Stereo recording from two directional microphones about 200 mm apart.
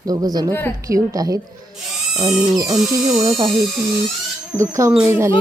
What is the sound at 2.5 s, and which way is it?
Speech, 20° right (ahead or behind).